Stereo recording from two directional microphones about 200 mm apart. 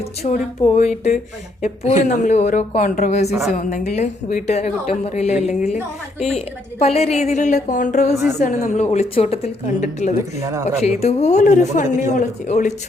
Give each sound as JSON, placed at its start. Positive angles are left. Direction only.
{"t": 0.0, "sound": "a woman's voice", "side_deg": 35}